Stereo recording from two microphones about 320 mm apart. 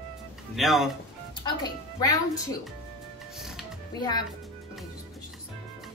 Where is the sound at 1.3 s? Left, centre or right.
Centre.